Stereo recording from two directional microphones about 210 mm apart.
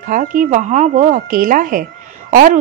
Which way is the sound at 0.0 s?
40° right (ahead or behind).